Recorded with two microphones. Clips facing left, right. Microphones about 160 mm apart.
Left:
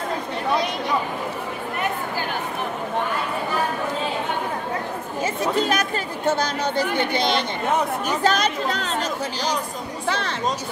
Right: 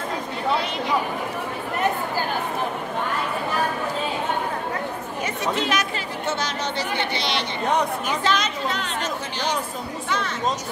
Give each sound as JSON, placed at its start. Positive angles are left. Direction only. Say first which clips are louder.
{"t": 5.2, "sound": "chatter", "louder": "left 3 dB", "side_deg": 40}
{"t": 6.3, "sound": "speech", "louder": "left 4 dB", "side_deg": 45}